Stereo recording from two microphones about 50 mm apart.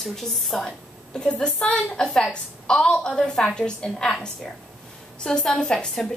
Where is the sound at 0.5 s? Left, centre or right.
Centre.